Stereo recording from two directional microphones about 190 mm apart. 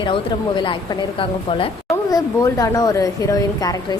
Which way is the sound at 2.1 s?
15° left (ahead or behind).